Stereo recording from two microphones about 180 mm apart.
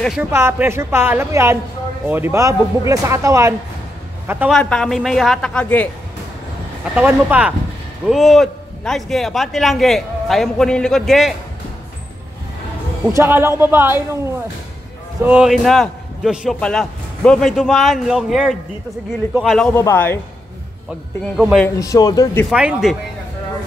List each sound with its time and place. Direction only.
0.0 s a man's voice: centre (ahead or behind)
0.3 s speech: 15° right (ahead or behind)
4.5 s a man's voice: 5° left (ahead or behind)
7.0 s a man's voice: 10° right (ahead or behind)
13.1 s a man's voice: 15° right (ahead or behind)
19.7 s a man's voice: 15° left (ahead or behind)
21.4 s a man's voice: centre (ahead or behind)
21.6 s a man's voice: 20° left (ahead or behind)
22.5 s a man's voice: 5° right (ahead or behind)